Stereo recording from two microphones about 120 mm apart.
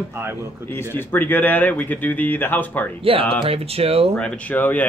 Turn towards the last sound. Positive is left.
turn(degrees=15)  # may be behind; listen again after turning